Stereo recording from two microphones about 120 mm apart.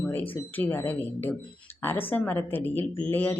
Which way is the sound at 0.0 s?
15° left (ahead or behind).